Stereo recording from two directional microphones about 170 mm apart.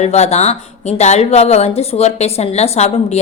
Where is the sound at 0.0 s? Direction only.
40° left (ahead or behind).